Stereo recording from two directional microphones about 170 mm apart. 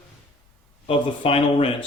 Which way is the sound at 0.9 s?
35° left (ahead or behind).